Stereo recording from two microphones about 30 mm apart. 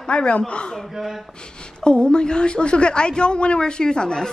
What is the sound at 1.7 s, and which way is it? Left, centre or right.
A woman's voice, left.